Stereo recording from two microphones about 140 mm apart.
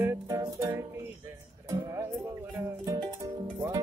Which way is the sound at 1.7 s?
20° right (ahead or behind).